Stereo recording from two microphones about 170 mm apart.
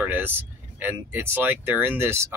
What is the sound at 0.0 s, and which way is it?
Speech, 10° right (ahead or behind).